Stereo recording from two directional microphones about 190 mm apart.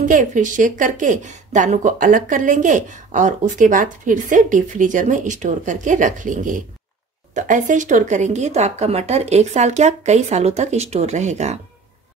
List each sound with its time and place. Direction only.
0.0 s a woman's voice: 40° right (ahead or behind)